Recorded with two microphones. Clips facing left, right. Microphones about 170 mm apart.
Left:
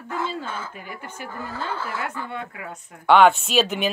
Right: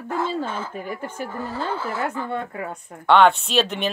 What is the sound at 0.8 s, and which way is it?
Speech, 45° right (ahead or behind).